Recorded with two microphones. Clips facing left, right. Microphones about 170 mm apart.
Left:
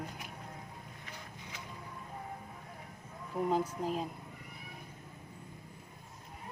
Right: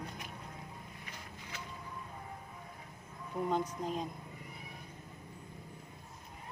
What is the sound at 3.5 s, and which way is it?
Speech, 5° left (ahead or behind).